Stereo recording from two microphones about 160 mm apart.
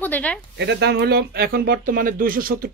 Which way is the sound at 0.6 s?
90° right.